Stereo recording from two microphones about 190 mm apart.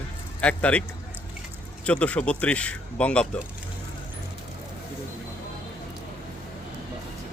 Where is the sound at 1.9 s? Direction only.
5° left (ahead or behind).